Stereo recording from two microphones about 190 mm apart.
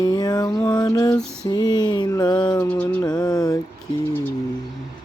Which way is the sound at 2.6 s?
10° left (ahead or behind).